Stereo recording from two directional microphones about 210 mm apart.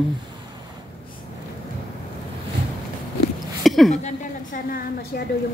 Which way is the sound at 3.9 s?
35° left (ahead or behind).